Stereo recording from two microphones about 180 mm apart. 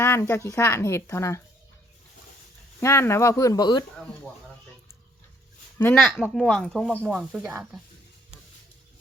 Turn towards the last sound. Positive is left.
turn(degrees=-5)  # may be behind; listen again after turning